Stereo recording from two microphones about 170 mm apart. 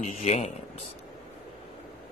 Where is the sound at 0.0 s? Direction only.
45° left (ahead or behind).